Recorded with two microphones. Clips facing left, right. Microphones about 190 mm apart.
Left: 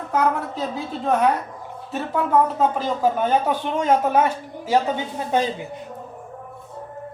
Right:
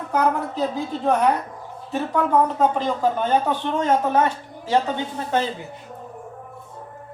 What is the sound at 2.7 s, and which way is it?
Speech, 5° left (ahead or behind).